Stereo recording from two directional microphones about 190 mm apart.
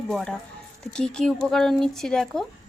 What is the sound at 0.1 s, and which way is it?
Speech, centre (ahead or behind).